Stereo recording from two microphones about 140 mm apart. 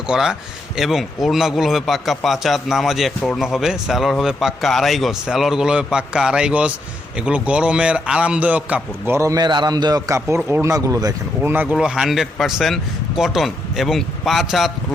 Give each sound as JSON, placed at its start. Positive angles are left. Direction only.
{"t": 0.1, "sound": "a man's voice", "side_deg": -5}
{"t": 11.5, "sound": "a man's voice", "side_deg": -10}